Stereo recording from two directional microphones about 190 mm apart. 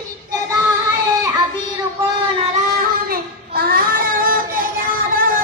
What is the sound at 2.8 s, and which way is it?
Child singing, 50° right (ahead or behind).